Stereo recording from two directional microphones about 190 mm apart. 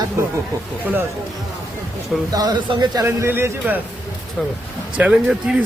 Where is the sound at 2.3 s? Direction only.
20° right (ahead or behind).